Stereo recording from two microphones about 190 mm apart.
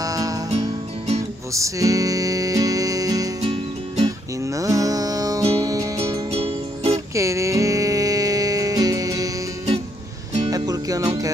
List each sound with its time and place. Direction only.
0.0 s music: 20° right (ahead or behind)
0.5 s music: 35° right (ahead or behind)
1.5 s music: 15° right (ahead or behind)
3.3 s music: 35° right (ahead or behind)
4.4 s music: 15° right (ahead or behind)
6.3 s music: 35° right (ahead or behind)
7.2 s music: 15° right (ahead or behind)
10.5 s music: 20° right (ahead or behind)